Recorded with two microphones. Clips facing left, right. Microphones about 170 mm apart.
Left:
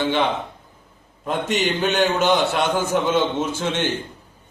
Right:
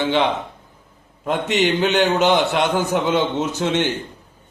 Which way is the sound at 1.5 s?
15° right (ahead or behind).